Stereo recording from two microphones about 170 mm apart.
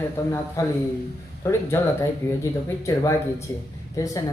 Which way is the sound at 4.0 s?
20° left (ahead or behind).